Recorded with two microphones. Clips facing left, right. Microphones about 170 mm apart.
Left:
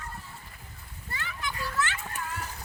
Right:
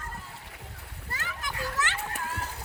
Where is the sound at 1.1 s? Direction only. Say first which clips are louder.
Left 1 dB; 45° right (ahead or behind).